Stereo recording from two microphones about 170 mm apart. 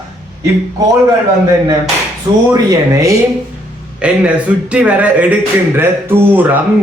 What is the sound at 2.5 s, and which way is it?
Speech, 20° right (ahead or behind).